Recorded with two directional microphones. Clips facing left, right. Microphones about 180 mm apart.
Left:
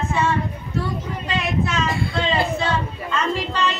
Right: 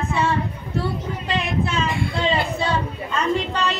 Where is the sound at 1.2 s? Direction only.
35° right (ahead or behind).